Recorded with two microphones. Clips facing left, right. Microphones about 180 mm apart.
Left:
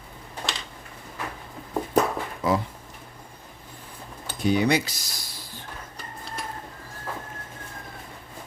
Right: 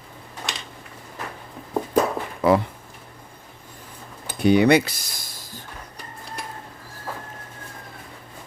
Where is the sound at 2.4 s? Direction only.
65° right (ahead or behind).